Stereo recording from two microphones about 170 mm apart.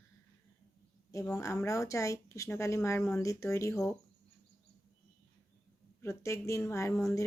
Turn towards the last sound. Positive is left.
turn(degrees=20)  # may be behind; listen again after turning